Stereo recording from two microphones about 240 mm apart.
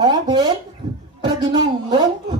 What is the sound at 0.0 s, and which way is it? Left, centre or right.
Speech, centre.